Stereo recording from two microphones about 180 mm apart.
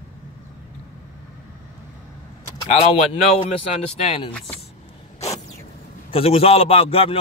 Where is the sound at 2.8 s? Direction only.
35° left (ahead or behind).